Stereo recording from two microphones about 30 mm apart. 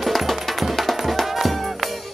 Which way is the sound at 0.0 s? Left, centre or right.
Centre.